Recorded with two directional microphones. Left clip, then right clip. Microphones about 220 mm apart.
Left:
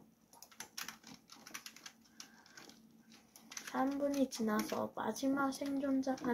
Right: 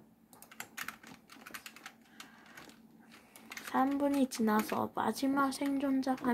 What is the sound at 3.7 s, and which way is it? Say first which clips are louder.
Speech: right 5 dB; 40° right (ahead or behind).